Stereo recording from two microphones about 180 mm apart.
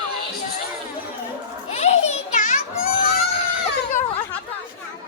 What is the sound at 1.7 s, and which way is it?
Children playing, 40° left (ahead or behind).